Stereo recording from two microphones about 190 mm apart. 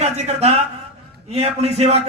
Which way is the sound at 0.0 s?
35° right (ahead or behind).